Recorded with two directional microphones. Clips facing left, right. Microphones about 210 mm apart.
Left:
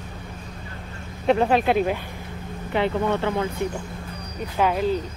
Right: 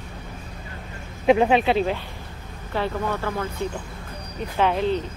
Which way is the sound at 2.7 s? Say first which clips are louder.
Left 3 dB; 20° left (ahead or behind).